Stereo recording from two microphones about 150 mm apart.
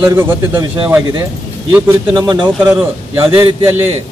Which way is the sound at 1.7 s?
20° right (ahead or behind).